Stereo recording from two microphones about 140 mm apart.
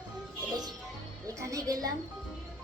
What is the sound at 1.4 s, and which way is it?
Speech, 25° right (ahead or behind).